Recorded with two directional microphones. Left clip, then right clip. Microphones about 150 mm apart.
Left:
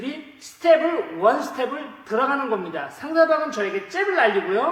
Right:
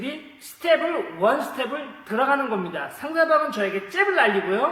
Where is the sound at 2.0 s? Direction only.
15° right (ahead or behind).